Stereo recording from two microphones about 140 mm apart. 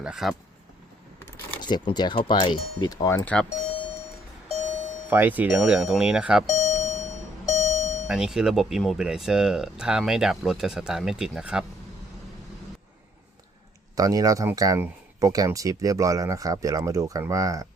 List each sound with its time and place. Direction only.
0.0 s speech: 5° right (ahead or behind)
1.6 s speech: 30° left (ahead or behind)
5.0 s speech: 15° right (ahead or behind)
6.5 s doorbell: 60° left (ahead or behind)
7.4 s alarm clock: 60° left (ahead or behind)
8.0 s speech: 5° right (ahead or behind)
13.9 s speech: 25° right (ahead or behind)